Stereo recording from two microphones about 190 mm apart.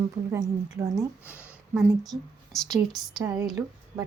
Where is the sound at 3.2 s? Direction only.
20° right (ahead or behind).